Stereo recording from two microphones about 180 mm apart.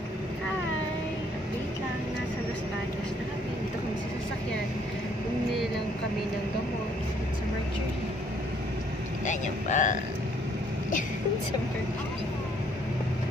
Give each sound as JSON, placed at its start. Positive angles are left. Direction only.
{"t": 9.2, "sound": "speech", "side_deg": 45}